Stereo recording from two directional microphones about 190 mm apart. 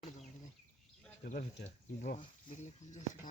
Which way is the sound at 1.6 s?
40° left (ahead or behind).